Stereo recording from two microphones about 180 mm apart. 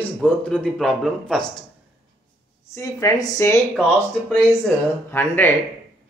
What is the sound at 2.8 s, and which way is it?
Speech, 15° left (ahead or behind).